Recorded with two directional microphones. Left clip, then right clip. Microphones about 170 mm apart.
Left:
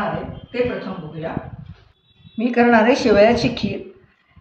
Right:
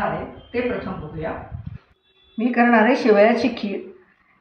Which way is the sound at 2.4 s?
15° left (ahead or behind).